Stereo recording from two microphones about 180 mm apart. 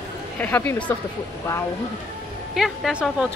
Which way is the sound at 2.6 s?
Centre (ahead or behind).